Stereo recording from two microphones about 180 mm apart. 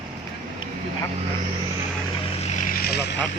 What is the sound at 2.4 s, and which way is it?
Vehicle, 45° left (ahead or behind).